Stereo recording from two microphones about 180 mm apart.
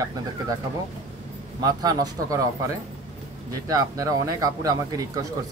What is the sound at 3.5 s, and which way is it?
Speech, 20° right (ahead or behind).